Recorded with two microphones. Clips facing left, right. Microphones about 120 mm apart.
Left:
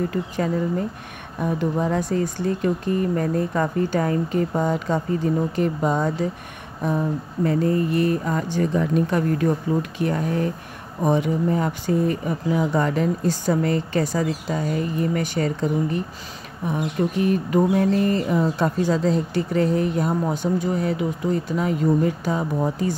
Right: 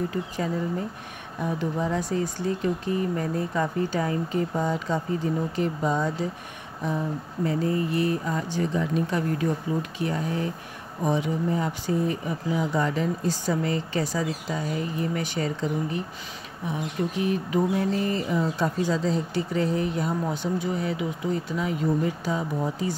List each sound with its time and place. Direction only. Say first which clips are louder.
1.4 s speech: left 4 dB; 55° left (ahead or behind)
7.4 s speech: left 5 dB; 50° left (ahead or behind)